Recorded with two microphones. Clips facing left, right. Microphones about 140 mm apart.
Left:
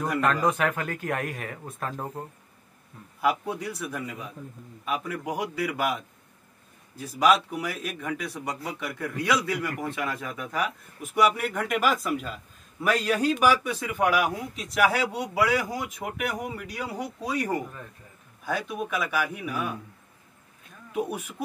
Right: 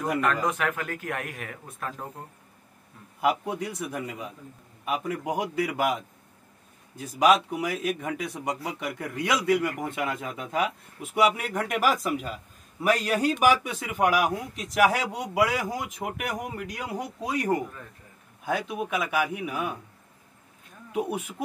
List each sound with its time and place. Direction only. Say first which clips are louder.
0.2 s speech: left 2 dB; 30° left (ahead or behind)
3.2 s a man's voice: right 1 dB; 15° right (ahead or behind)
11.6 s speech: right 1 dB; 5° right (ahead or behind)
18.4 s a man's voice: right 1 dB; 20° right (ahead or behind)
20.9 s speech: right 1 dB; 20° right (ahead or behind)